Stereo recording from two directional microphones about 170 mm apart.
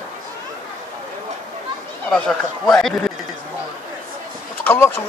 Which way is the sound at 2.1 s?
Centre (ahead or behind).